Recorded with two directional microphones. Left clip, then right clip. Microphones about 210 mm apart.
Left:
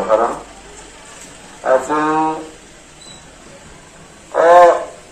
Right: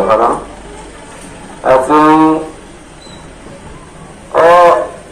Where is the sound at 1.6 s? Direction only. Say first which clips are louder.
Right 7 dB; 20° right (ahead or behind).